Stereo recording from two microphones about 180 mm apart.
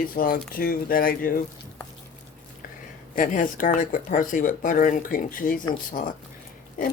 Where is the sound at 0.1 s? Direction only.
55° left (ahead or behind).